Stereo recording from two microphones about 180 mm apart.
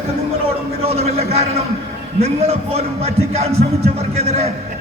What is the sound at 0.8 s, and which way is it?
Speech, 35° right (ahead or behind).